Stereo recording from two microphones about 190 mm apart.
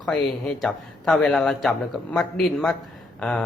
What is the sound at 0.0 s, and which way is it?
Speech, 5° left (ahead or behind).